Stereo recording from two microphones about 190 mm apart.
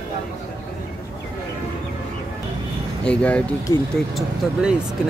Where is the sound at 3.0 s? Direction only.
5° left (ahead or behind).